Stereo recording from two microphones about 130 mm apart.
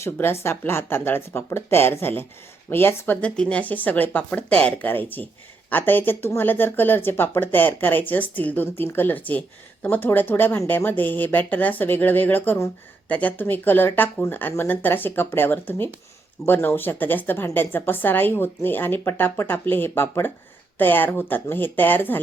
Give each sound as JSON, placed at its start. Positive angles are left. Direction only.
{"t": 0.0, "sound": "a woman's voice", "side_deg": 20}